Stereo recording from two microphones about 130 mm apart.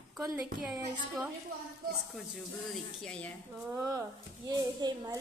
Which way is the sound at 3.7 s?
25° right (ahead or behind).